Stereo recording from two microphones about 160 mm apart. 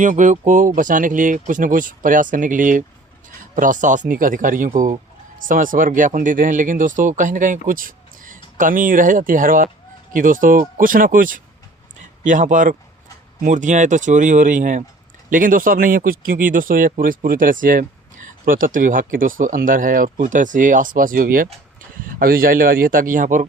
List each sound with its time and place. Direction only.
0.0 s speech: 50° right (ahead or behind)